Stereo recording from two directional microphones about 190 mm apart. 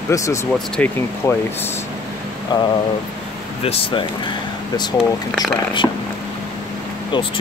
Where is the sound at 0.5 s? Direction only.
5° left (ahead or behind).